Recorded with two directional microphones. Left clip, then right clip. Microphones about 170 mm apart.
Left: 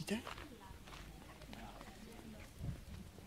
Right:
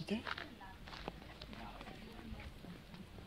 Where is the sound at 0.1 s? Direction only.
15° left (ahead or behind).